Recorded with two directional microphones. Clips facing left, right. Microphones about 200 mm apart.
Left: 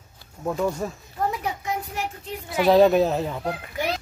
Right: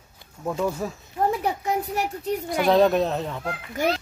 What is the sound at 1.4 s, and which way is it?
Speech, 35° right (ahead or behind).